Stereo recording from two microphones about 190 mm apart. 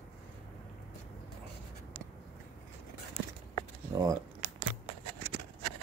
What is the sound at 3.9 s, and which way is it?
Camera, 20° right (ahead or behind).